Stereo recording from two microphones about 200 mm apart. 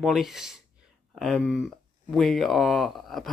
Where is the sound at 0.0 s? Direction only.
Centre (ahead or behind).